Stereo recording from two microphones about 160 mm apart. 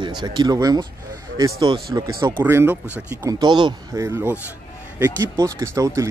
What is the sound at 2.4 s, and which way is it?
Speech, 15° right (ahead or behind).